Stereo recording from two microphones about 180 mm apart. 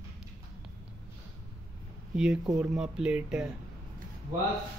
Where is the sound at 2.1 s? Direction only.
5° right (ahead or behind).